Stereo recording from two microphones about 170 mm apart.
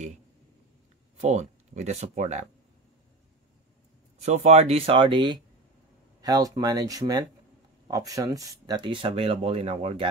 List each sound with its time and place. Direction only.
1.2 s speech: 45° right (ahead or behind)
4.2 s speech: 40° right (ahead or behind)